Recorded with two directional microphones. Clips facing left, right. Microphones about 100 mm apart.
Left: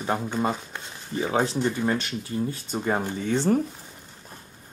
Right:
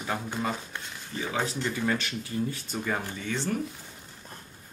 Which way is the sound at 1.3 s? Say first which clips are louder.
Left 6 dB; 20° left (ahead or behind).